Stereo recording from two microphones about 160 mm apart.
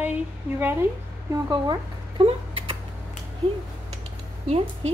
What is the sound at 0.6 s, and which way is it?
Speech, 15° right (ahead or behind).